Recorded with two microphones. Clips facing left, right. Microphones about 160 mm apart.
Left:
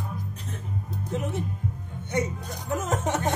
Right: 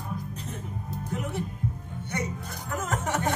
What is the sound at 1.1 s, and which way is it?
Music, 20° left (ahead or behind).